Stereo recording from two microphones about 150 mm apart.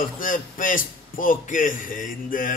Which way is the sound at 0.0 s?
65° left (ahead or behind).